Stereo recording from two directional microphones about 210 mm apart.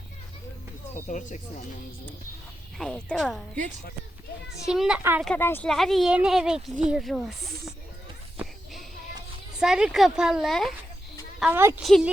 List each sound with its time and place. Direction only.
0.9 s speech: 35° left (ahead or behind)
2.7 s speech: centre (ahead or behind)
4.6 s speech: centre (ahead or behind)
5.3 s speech: 10° left (ahead or behind)
9.6 s a woman's voice: 5° right (ahead or behind)